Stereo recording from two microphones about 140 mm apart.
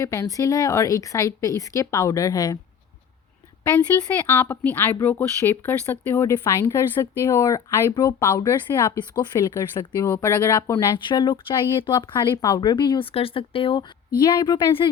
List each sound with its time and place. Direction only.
0.0 s speech: 20° left (ahead or behind)
4.3 s a woman's voice: 15° left (ahead or behind); by 14.8 s 35° left (ahead or behind)